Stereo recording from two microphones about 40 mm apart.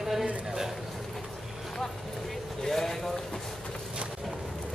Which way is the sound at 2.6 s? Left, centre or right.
Centre.